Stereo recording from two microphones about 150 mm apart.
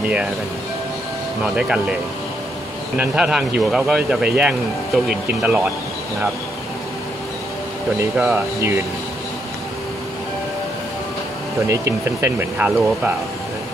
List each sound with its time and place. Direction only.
1.4 s speech: 5° right (ahead or behind)
3.0 s speech: 5° right (ahead or behind)
8.2 s speech: 15° right (ahead or behind)
11.6 s speech: 20° right (ahead or behind)